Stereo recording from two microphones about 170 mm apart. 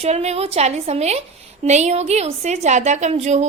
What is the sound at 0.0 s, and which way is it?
A woman's voice, 40° right (ahead or behind).